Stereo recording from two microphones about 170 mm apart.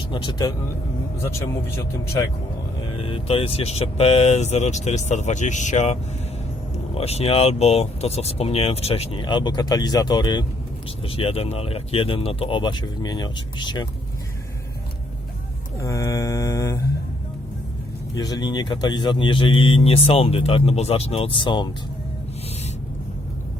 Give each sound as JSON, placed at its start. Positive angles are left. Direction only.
{"t": 0.1, "sound": "mantra", "side_deg": 25}
{"t": 3.0, "sound": "speech", "side_deg": 35}
{"t": 15.8, "sound": "mantra", "side_deg": 20}
{"t": 18.1, "sound": "speech", "side_deg": 20}